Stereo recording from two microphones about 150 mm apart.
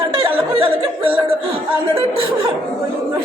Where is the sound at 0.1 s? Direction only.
35° right (ahead or behind).